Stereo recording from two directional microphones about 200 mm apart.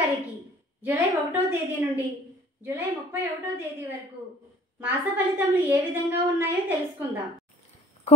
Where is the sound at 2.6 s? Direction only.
10° right (ahead or behind).